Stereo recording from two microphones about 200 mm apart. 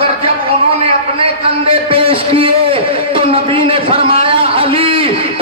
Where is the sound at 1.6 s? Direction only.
25° right (ahead or behind).